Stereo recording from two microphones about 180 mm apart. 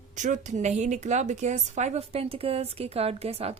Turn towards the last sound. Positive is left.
turn(degrees=-35)  # may be behind; listen again after turning